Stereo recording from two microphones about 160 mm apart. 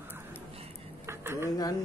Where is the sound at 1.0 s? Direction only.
15° right (ahead or behind).